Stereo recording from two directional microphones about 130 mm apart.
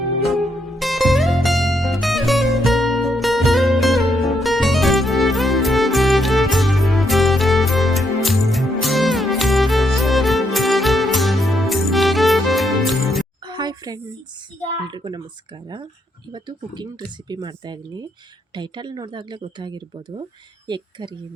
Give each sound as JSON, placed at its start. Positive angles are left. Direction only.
{"t": 0.2, "sound": "music", "side_deg": 0}
{"t": 13.5, "sound": "a sound", "side_deg": -35}
{"t": 16.3, "sound": "speech", "side_deg": -35}